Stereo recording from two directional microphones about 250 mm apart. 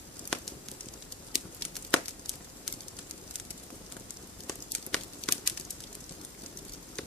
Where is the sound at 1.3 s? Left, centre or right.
Centre.